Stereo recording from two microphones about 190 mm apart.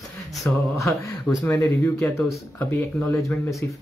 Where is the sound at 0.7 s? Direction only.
15° left (ahead or behind).